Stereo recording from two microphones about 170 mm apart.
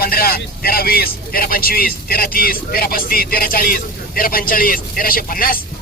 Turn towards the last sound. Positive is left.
turn(degrees=55)  # may be behind; listen again after turning